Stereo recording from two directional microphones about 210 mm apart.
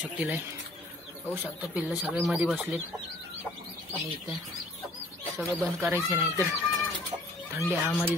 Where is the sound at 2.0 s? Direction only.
Centre (ahead or behind).